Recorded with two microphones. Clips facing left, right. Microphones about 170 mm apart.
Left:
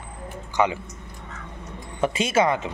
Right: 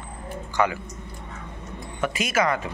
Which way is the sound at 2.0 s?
30° left (ahead or behind).